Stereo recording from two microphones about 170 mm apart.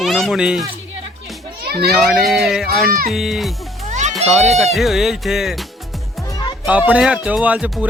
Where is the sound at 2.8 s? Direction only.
60° right (ahead or behind).